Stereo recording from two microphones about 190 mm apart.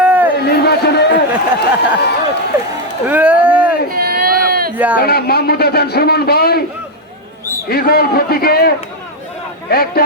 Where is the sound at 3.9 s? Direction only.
55° right (ahead or behind).